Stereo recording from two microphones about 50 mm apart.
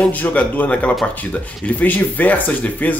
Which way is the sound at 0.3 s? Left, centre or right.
Left.